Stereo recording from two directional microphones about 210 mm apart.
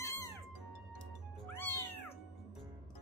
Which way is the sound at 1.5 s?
10° left (ahead or behind).